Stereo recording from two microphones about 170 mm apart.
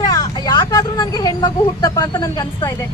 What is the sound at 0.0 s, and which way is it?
Speech, 20° left (ahead or behind).